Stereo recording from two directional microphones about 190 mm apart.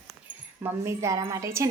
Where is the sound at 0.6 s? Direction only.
15° right (ahead or behind).